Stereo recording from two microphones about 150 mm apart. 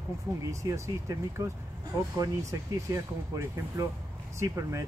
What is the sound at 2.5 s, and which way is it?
A man's voice, 20° right (ahead or behind).